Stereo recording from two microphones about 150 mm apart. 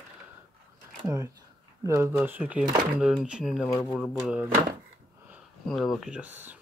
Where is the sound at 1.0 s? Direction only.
20° right (ahead or behind).